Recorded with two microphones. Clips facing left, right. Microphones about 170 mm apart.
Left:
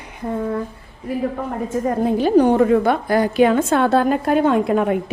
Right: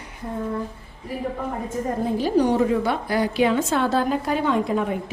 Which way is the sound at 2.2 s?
60° left (ahead or behind).